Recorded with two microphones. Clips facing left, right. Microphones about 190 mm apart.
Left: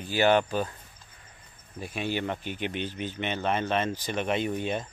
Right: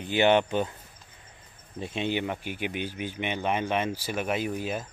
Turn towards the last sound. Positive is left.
turn(degrees=-5)  # may be behind; listen again after turning